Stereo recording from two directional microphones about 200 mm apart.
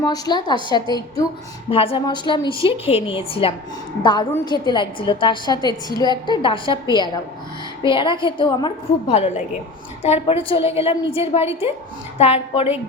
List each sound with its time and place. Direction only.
0.0 s a woman's voice: 20° left (ahead or behind)
7.9 s a woman's voice: 25° left (ahead or behind)